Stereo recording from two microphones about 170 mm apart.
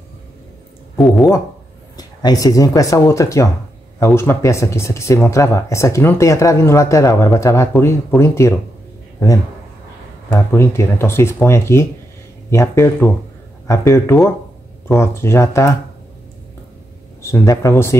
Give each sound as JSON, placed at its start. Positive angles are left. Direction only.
{"t": 0.9, "sound": "speech", "side_deg": 0}
{"t": 2.0, "sound": "speech", "side_deg": 20}
{"t": 10.3, "sound": "speech", "side_deg": 15}
{"t": 17.2, "sound": "speech", "side_deg": 15}